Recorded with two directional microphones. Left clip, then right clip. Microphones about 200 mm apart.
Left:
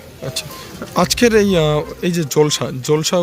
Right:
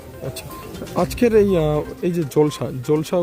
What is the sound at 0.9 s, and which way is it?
Speech, 5° right (ahead or behind).